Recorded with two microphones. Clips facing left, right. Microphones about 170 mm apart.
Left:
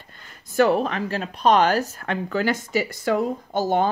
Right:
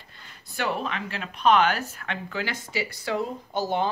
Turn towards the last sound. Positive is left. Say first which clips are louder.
# left 5 dB
turn(degrees=50)  # may be behind; listen again after turning